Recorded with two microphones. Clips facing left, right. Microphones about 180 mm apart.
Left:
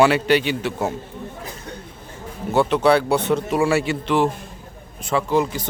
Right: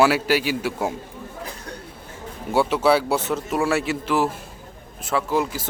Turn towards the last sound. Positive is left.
turn(degrees=-5)  # may be behind; listen again after turning